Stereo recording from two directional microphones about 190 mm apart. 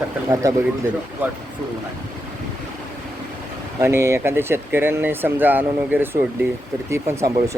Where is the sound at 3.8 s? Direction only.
15° right (ahead or behind).